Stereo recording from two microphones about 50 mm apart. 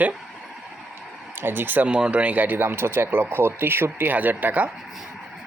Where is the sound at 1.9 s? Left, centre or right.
Right.